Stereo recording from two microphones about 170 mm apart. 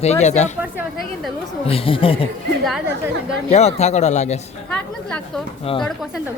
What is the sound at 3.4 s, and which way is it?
Speech, 40° left (ahead or behind).